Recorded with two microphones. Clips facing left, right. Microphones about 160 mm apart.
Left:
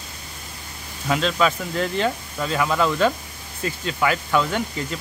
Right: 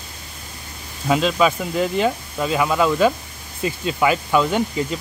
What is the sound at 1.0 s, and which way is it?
Speech, 15° right (ahead or behind).